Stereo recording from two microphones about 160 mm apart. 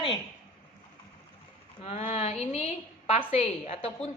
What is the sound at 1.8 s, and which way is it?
A woman's voice, 40° left (ahead or behind).